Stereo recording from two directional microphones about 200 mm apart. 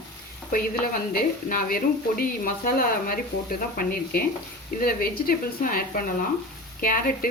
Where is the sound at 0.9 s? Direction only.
45° left (ahead or behind).